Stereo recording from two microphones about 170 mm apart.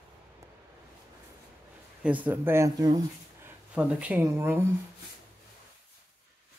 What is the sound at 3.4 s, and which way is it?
Speech, 5° right (ahead or behind).